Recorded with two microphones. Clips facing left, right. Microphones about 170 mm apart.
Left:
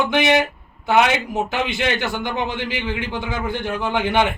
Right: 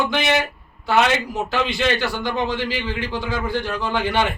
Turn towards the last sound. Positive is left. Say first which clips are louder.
# left 2 dB
turn(degrees=20)  # may be behind; listen again after turning